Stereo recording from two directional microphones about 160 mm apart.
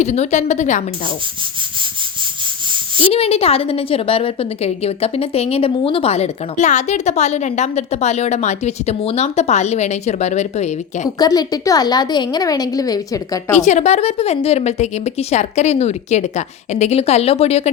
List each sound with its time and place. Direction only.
0.0 s a woman's voice: 45° left (ahead or behind)
3.0 s a woman's voice: 40° left (ahead or behind)
11.2 s a woman's voice: 25° left (ahead or behind)
13.5 s a woman's voice: 45° left (ahead or behind)